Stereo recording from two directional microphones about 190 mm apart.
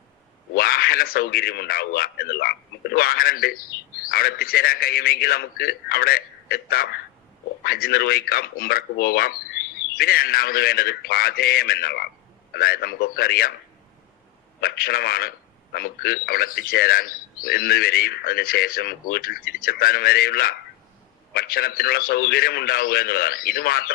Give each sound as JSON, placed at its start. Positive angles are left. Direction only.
{"t": 0.5, "sound": "speech", "side_deg": 50}
{"t": 14.6, "sound": "speech", "side_deg": 50}